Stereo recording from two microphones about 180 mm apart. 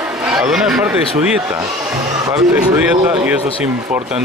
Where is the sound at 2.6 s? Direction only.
5° right (ahead or behind).